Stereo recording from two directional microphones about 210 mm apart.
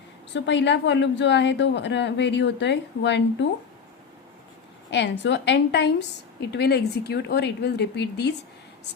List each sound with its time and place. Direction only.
0.3 s a woman's voice: 55° left (ahead or behind)
4.9 s a woman's voice: 55° left (ahead or behind)